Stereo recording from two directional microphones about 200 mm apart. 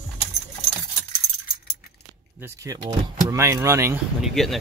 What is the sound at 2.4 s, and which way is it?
Speech, 15° right (ahead or behind).